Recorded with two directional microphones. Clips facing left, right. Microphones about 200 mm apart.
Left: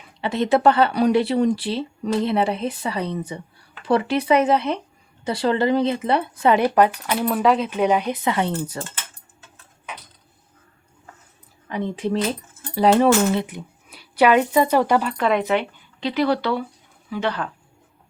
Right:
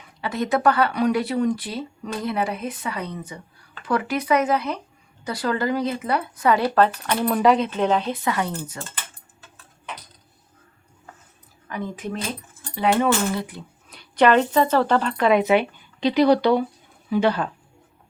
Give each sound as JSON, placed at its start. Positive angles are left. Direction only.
{"t": 0.2, "sound": "speech", "side_deg": 25}
{"t": 7.2, "sound": "speech", "side_deg": 0}
{"t": 7.7, "sound": "speech", "side_deg": 10}
{"t": 11.7, "sound": "speech", "side_deg": 25}
{"t": 13.3, "sound": "speech", "side_deg": 20}
{"t": 13.9, "sound": "speech", "side_deg": 5}
{"t": 15.1, "sound": "speech", "side_deg": -5}